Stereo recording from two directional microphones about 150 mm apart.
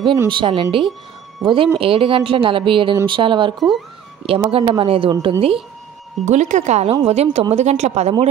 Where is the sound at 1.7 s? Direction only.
35° right (ahead or behind).